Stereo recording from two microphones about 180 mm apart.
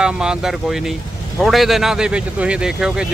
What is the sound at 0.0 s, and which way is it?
Speech, 5° right (ahead or behind).